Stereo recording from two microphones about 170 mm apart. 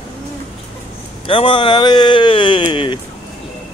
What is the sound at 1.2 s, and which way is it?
Speech, 30° left (ahead or behind).